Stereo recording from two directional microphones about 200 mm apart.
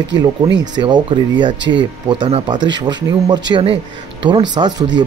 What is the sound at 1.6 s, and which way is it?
Speech, 65° right (ahead or behind).